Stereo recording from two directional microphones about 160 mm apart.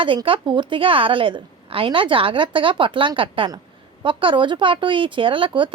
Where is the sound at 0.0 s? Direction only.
30° right (ahead or behind).